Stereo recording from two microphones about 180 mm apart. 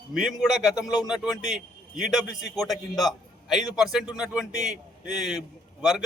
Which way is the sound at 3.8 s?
5° right (ahead or behind).